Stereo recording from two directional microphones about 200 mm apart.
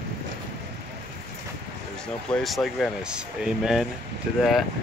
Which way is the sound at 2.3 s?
Centre (ahead or behind).